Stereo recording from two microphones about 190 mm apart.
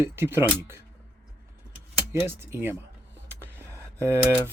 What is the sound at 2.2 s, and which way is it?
Speech, 10° right (ahead or behind).